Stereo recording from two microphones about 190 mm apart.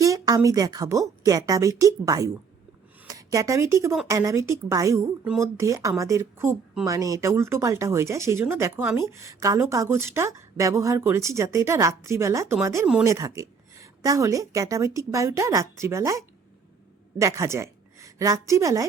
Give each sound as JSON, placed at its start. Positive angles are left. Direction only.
{"t": 0.0, "sound": "a woman's voice", "side_deg": -15}